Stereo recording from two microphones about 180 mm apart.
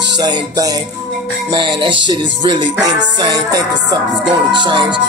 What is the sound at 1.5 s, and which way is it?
Music, 25° right (ahead or behind).